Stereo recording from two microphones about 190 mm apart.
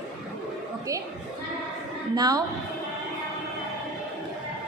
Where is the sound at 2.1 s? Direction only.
20° right (ahead or behind).